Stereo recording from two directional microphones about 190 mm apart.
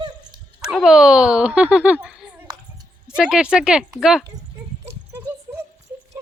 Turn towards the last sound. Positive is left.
turn(degrees=-15)  # may be behind; listen again after turning